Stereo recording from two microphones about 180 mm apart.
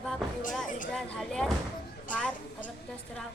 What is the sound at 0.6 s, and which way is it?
Speech, 45° left (ahead or behind).